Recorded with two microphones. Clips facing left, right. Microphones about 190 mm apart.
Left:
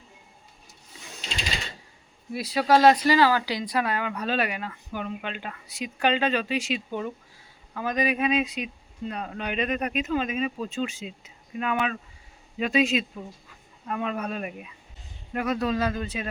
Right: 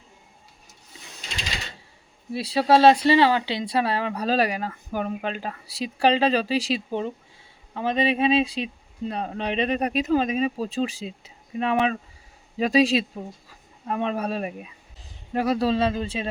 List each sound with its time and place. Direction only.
2.3 s speech: 30° right (ahead or behind)